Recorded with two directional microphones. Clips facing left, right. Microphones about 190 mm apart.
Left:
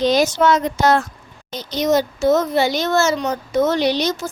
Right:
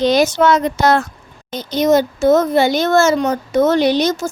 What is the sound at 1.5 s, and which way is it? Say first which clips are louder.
A child's voice: right 4 dB; 55° right (ahead or behind).